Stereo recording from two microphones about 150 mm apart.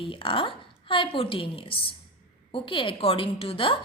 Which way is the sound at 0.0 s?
35° left (ahead or behind).